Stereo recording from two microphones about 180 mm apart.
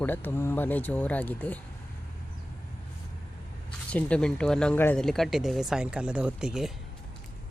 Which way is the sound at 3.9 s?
5° left (ahead or behind).